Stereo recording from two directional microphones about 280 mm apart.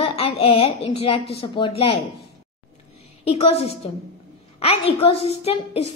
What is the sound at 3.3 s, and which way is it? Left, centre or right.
A woman's voice, left.